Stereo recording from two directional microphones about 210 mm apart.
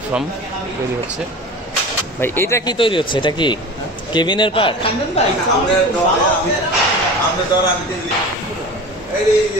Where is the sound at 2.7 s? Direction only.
25° left (ahead or behind).